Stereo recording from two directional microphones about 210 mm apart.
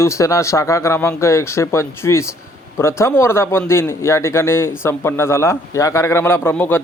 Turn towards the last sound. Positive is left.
turn(degrees=10)  # may be behind; listen again after turning